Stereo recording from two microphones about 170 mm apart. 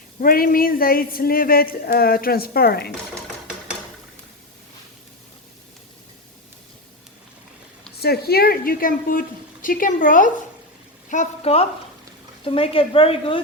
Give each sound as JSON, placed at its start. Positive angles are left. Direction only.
{"t": 0.2, "sound": "speech", "side_deg": 55}
{"t": 8.0, "sound": "a woman's voice", "side_deg": 65}